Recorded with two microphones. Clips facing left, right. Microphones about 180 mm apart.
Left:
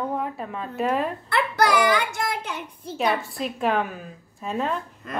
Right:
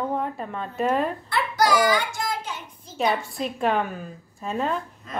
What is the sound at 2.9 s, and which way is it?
A woman's voice, centre (ahead or behind).